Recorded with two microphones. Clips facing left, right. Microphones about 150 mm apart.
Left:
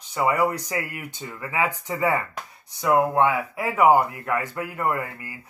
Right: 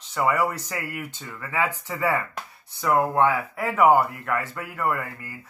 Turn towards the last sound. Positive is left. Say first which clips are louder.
# left 1 dB
turn(degrees=15)  # may be behind; listen again after turning